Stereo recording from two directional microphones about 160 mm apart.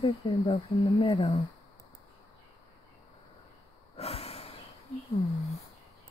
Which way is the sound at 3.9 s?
40° left (ahead or behind).